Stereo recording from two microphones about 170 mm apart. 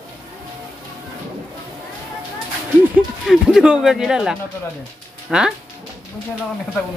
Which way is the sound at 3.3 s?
5° right (ahead or behind).